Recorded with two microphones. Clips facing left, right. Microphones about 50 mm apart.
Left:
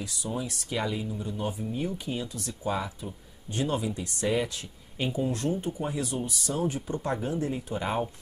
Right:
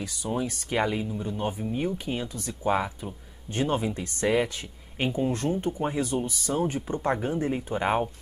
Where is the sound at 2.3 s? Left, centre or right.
Right.